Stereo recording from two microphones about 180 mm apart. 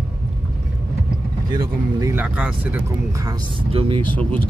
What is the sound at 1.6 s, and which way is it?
Vehicle, 20° right (ahead or behind).